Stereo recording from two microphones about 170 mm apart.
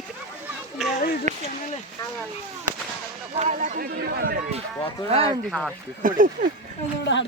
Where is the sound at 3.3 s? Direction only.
40° right (ahead or behind).